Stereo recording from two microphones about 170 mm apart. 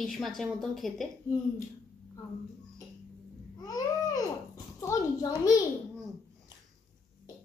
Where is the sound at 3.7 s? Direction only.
20° left (ahead or behind).